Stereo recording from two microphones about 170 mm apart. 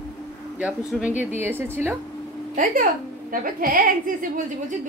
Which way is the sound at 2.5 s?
55° right (ahead or behind).